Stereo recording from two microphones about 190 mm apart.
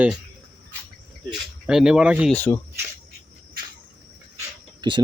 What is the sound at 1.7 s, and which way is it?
Speech, 5° right (ahead or behind).